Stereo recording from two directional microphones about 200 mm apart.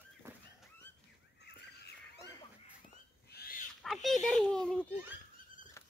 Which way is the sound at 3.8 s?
Centre (ahead or behind).